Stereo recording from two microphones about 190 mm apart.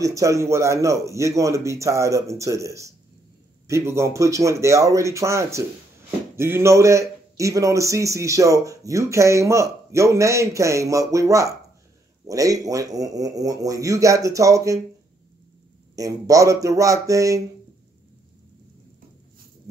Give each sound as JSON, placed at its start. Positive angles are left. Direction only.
{"t": 0.0, "sound": "a man's voice", "side_deg": -15}
{"t": 16.0, "sound": "a man's voice", "side_deg": -20}